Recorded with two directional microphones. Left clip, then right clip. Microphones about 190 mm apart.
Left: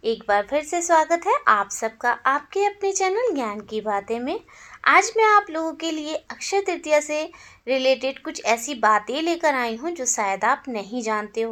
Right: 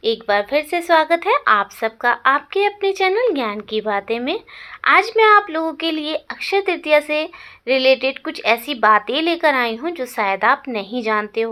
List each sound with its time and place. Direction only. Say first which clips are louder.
0.0 s speech: right 3 dB; 25° right (ahead or behind)
0.6 s a woman's voice: right 3 dB; 40° right (ahead or behind)
1.1 s speech: right 3 dB; 20° right (ahead or behind)